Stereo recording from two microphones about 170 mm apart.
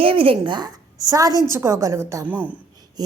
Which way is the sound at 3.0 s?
25° right (ahead or behind).